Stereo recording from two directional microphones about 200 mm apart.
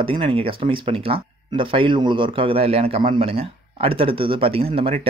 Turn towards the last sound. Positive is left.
turn(degrees=-30)  # may be behind; listen again after turning